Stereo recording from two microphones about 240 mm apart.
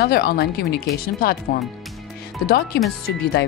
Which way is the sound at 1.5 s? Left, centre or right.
Left.